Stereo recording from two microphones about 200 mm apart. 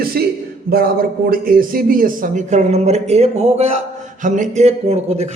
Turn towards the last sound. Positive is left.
turn(degrees=-30)  # may be behind; listen again after turning